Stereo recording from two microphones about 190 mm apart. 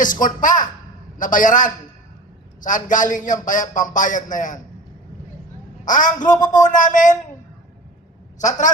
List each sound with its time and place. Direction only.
0.0 s a man's voice: 45° left (ahead or behind)
5.8 s a man's voice: 45° left (ahead or behind)
8.4 s a woman's voice: 40° left (ahead or behind)